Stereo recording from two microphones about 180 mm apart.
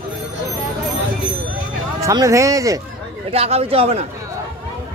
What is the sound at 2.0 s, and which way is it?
Speech, 15° right (ahead or behind).